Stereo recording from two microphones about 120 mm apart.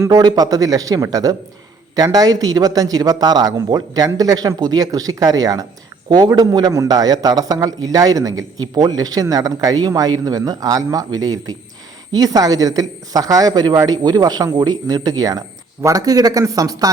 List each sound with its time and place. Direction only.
0.0 s a man's voice: 30° right (ahead or behind)